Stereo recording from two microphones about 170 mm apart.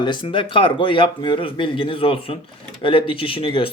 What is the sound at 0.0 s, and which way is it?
Speech, 30° left (ahead or behind).